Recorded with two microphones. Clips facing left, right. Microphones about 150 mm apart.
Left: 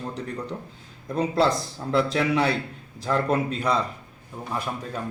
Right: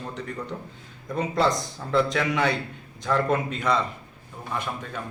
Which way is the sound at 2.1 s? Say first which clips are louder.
Left 2 dB; 30° left (ahead or behind).